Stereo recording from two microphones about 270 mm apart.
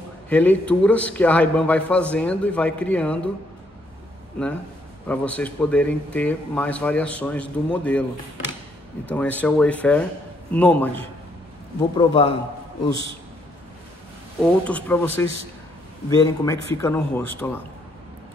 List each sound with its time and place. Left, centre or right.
0.3 s speech: centre
5.0 s speech: centre
9.0 s speech: centre
14.4 s speech: centre